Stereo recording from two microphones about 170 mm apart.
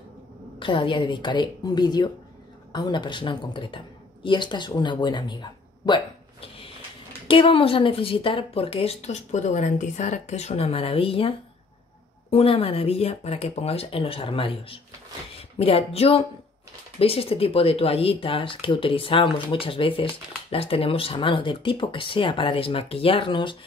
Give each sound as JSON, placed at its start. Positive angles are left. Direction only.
{"t": 0.6, "sound": "a woman's voice", "side_deg": 30}